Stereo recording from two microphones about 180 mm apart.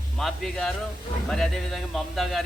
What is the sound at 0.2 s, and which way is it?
Speech, centre (ahead or behind).